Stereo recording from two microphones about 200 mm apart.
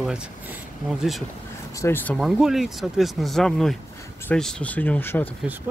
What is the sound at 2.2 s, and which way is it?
Speech, centre (ahead or behind).